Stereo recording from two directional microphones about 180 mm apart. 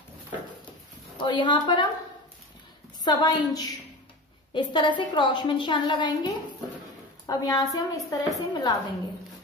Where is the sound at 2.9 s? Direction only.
25° left (ahead or behind).